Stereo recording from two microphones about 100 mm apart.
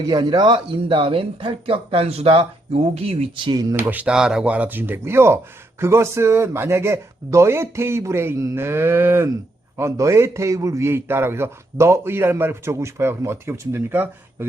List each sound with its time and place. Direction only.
0.1 s speech: 45° right (ahead or behind); by 3.5 s 70° right (ahead or behind)
3.5 s speech: 40° right (ahead or behind)
3.8 s speech: 15° right (ahead or behind)
4.1 s a man's voice: 5° right (ahead or behind); by 14.4 s 20° right (ahead or behind)